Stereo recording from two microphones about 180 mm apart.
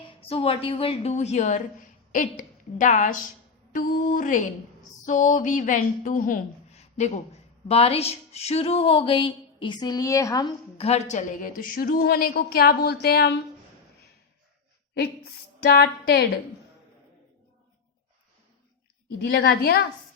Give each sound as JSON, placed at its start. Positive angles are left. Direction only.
{"t": 0.2, "sound": "a woman's voice", "side_deg": 30}
{"t": 3.7, "sound": "a sound", "side_deg": 45}
{"t": 6.7, "sound": "a woman's voice", "side_deg": 40}
{"t": 10.8, "sound": "a woman's voice", "side_deg": 35}
{"t": 15.6, "sound": "a woman's voice", "side_deg": 60}
{"t": 19.2, "sound": "a woman's voice", "side_deg": 65}